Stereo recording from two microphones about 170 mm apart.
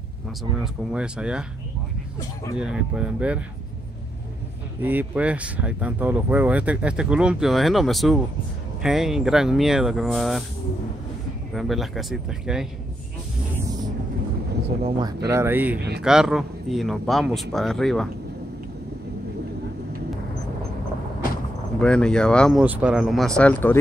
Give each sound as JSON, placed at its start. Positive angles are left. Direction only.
{"t": 0.9, "sound": "speech", "side_deg": -5}
{"t": 2.5, "sound": "speech", "side_deg": -5}
{"t": 4.8, "sound": "speech", "side_deg": -10}
{"t": 11.5, "sound": "speech", "side_deg": 0}
{"t": 14.8, "sound": "speech", "side_deg": -35}
{"t": 15.2, "sound": "speech", "side_deg": -15}
{"t": 21.7, "sound": "speech", "side_deg": 5}
{"t": 22.6, "sound": "speech", "side_deg": -5}